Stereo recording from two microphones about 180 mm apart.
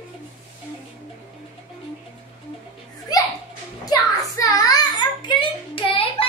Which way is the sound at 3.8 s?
20° left (ahead or behind).